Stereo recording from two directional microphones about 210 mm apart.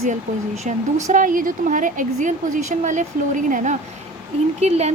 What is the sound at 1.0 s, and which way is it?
Speech, 40° right (ahead or behind).